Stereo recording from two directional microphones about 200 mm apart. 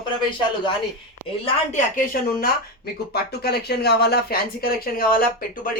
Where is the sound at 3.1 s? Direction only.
55° left (ahead or behind).